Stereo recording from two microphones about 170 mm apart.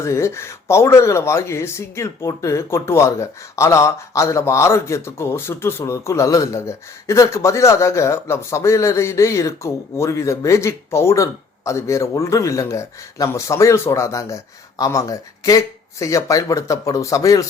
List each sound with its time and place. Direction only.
0.0 s speech: 15° left (ahead or behind)